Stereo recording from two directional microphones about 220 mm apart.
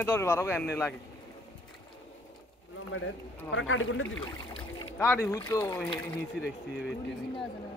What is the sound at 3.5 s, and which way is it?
Speech, 65° left (ahead or behind).